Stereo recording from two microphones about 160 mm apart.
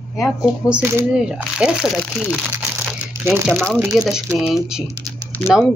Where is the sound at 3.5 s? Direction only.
5° left (ahead or behind).